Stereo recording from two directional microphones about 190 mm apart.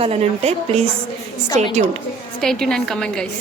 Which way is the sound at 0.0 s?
35° right (ahead or behind).